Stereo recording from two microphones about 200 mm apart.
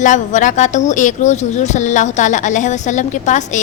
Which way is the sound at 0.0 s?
40° left (ahead or behind).